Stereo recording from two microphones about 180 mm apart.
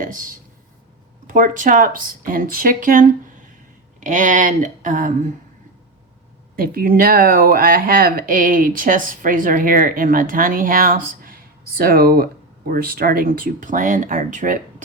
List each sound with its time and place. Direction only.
0.0 s speech: 45° right (ahead or behind)
6.6 s speech: 55° right (ahead or behind)